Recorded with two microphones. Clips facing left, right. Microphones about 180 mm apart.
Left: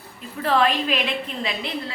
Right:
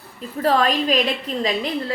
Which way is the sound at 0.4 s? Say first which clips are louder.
Right 2 dB; 40° right (ahead or behind).